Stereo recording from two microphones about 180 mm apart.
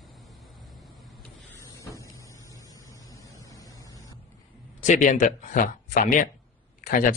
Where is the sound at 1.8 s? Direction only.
15° left (ahead or behind).